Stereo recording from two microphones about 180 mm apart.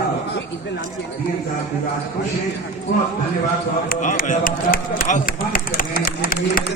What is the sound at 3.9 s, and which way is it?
A man's voice, 50° left (ahead or behind).